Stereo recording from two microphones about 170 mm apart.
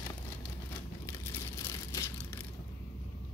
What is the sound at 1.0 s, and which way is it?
Crushing, 15° left (ahead or behind).